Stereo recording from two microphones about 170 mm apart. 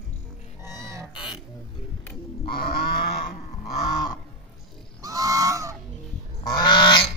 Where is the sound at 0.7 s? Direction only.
15° right (ahead or behind).